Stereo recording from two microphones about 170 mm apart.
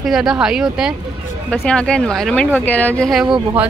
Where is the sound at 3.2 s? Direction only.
30° right (ahead or behind).